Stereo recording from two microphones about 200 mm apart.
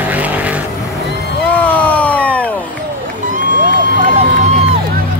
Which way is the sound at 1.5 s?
10° left (ahead or behind).